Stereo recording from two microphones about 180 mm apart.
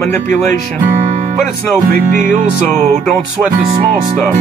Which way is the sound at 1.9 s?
45° right (ahead or behind).